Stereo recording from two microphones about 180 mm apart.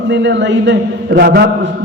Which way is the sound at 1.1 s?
55° right (ahead or behind).